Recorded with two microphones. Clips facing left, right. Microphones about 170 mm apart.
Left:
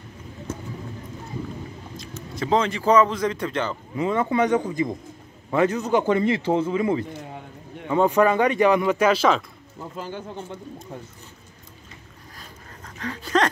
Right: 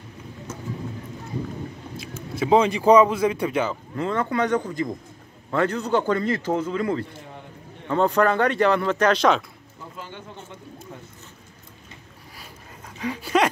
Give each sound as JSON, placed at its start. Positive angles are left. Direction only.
{"t": 2.0, "sound": "speech", "side_deg": -10}
{"t": 3.9, "sound": "a man's voice", "side_deg": 15}
{"t": 9.9, "sound": "speech", "side_deg": 40}
{"t": 12.4, "sound": "a sound", "side_deg": -10}